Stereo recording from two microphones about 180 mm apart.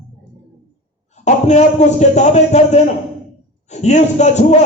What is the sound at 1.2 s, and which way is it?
A man's voice, 40° left (ahead or behind).